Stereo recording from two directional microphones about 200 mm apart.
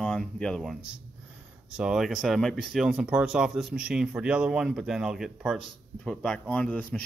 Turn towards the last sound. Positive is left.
turn(degrees=5)  # may be behind; listen again after turning